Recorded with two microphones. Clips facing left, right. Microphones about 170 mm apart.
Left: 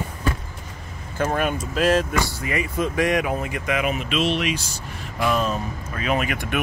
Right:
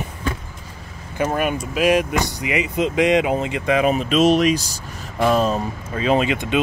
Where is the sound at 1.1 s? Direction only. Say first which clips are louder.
Right 2 dB; 10° right (ahead or behind).